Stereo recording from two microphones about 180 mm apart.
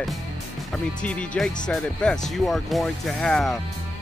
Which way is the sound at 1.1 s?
5° left (ahead or behind).